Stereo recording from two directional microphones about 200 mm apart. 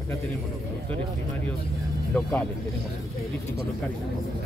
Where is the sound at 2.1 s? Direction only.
5° left (ahead or behind).